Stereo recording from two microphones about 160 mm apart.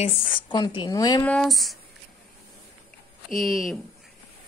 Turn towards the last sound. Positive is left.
turn(degrees=0)  # may be behind; listen again after turning